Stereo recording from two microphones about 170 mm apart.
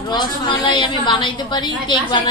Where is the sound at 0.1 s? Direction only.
25° left (ahead or behind).